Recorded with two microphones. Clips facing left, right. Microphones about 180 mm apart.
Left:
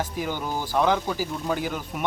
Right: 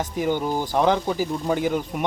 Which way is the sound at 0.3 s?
20° right (ahead or behind).